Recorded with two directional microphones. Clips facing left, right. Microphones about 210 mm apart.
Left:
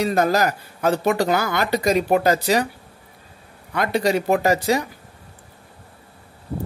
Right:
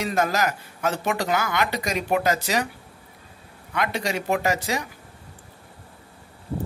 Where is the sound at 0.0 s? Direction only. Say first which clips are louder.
Left 5 dB; 35° left (ahead or behind).